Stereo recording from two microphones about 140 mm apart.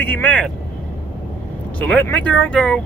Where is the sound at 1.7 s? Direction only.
10° left (ahead or behind).